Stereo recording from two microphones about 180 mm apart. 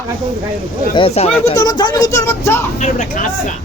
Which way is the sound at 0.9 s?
30° left (ahead or behind).